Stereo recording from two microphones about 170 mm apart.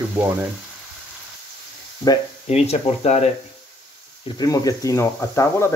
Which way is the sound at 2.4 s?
40° left (ahead or behind).